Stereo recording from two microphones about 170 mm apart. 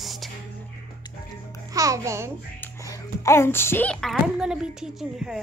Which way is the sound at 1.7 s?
20° right (ahead or behind).